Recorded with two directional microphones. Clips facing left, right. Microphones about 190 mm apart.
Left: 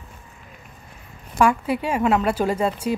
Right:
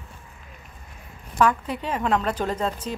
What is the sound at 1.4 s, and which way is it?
A woman's voice, 10° left (ahead or behind).